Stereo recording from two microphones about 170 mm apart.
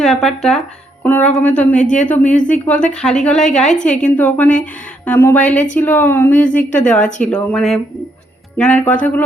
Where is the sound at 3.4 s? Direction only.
45° left (ahead or behind).